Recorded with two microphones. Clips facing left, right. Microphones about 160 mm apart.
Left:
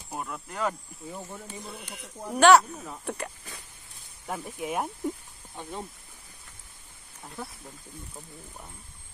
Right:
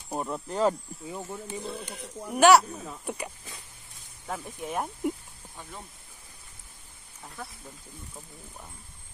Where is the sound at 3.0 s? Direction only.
5° right (ahead or behind).